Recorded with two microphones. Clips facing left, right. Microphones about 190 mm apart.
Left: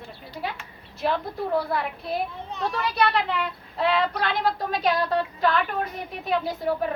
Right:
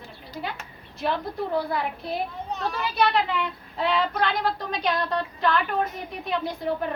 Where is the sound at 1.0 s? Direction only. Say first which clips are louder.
Left 1 dB; centre (ahead or behind).